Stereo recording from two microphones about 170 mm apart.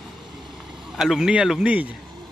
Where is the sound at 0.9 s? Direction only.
Centre (ahead or behind).